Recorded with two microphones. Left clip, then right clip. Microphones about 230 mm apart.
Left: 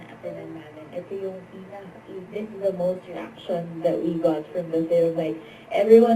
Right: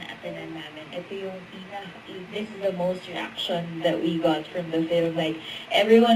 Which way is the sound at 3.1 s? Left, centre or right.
Centre.